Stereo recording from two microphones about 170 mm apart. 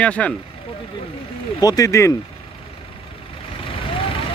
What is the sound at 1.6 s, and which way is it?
Speech, 20° left (ahead or behind).